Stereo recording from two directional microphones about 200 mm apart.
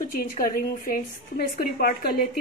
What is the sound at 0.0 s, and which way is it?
A woman's voice, 45° left (ahead or behind).